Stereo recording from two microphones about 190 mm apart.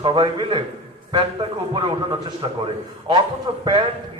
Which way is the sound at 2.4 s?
25° right (ahead or behind).